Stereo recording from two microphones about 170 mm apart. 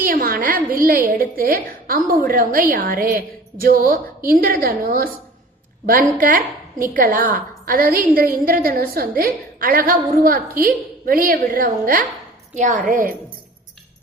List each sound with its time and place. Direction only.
0.0 s a woman's voice: 55° right (ahead or behind)